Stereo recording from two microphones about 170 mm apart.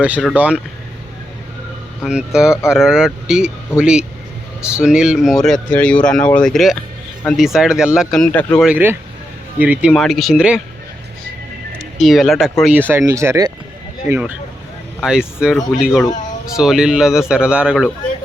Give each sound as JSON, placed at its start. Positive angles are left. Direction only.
{"t": 0.3, "sound": "speech", "side_deg": -5}
{"t": 2.0, "sound": "speech", "side_deg": -5}
{"t": 8.6, "sound": "speech", "side_deg": -10}
{"t": 11.8, "sound": "speech", "side_deg": 0}
{"t": 12.9, "sound": "speech", "side_deg": -15}